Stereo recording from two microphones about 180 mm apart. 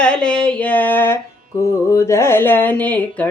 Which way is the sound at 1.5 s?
20° left (ahead or behind).